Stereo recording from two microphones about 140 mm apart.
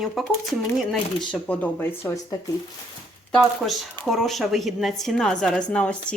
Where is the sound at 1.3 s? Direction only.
10° left (ahead or behind).